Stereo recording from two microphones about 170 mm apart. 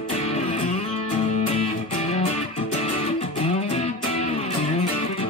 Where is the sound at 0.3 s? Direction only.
40° left (ahead or behind).